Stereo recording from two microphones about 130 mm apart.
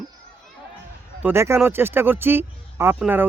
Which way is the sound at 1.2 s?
20° right (ahead or behind).